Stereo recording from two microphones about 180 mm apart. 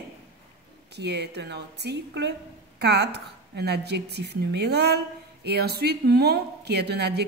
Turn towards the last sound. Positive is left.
turn(degrees=-65)  # may be behind; listen again after turning